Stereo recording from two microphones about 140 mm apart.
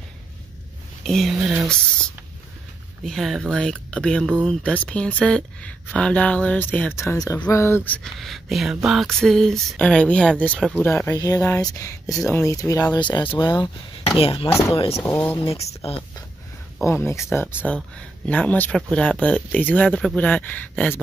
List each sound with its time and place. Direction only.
1.0 s speech: centre (ahead or behind)
3.1 s speech: centre (ahead or behind); by 14.5 s 40° left (ahead or behind)
15.0 s speech: 15° left (ahead or behind)
15.5 s speech: 45° left (ahead or behind)
16.8 s speech: 20° left (ahead or behind)
17.6 s speech: 10° left (ahead or behind)